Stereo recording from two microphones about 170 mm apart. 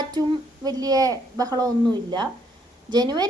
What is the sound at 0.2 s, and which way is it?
A woman's voice, 25° right (ahead or behind).